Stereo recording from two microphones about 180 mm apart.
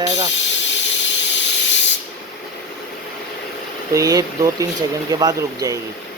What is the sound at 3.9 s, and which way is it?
Speech, 20° right (ahead or behind).